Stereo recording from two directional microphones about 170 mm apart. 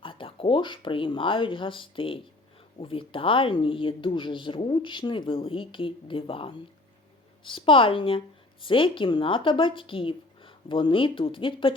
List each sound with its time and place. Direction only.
0.0 s speech: 30° left (ahead or behind)